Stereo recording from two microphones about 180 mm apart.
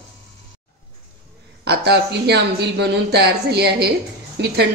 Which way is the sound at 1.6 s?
65° right (ahead or behind).